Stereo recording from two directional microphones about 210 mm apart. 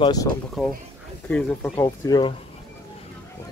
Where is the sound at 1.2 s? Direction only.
10° left (ahead or behind).